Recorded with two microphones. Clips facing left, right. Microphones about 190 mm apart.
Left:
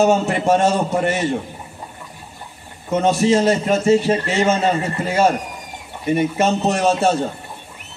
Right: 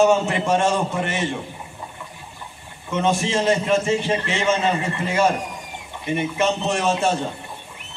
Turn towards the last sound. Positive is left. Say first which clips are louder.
# left 4 dB
turn(degrees=40)  # may be behind; listen again after turning